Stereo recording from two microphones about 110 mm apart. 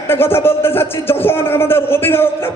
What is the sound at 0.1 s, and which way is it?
A man's voice, 20° left (ahead or behind).